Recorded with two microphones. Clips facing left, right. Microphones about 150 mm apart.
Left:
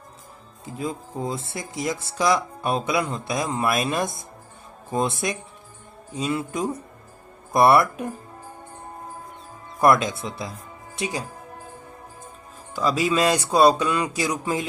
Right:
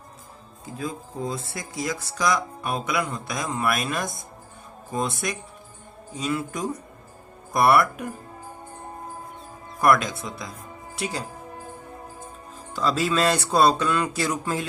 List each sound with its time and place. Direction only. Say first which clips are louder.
0.6 s speech: left 2 dB; 25° left (ahead or behind)
9.8 s speech: left 2 dB; 25° left (ahead or behind)
12.7 s speech: left 1 dB; 10° left (ahead or behind)